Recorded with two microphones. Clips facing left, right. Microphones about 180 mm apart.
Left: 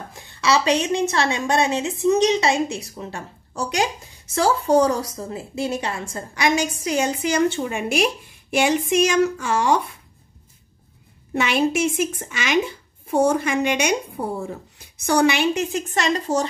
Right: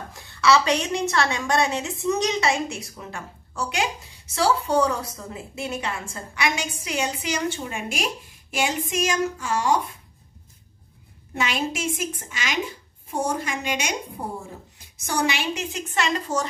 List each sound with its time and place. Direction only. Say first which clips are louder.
0.1 s a woman's voice: right 1 dB; 20° left (ahead or behind); by 9.8 s 70° left (ahead or behind)
11.3 s a woman's voice: left 7 dB; 60° left (ahead or behind)
15.0 s a woman's voice: left 7 dB; 60° left (ahead or behind)
15.9 s a woman's voice: left 1 dB; 40° left (ahead or behind)